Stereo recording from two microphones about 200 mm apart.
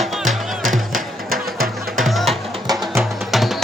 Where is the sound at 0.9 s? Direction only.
45° right (ahead or behind).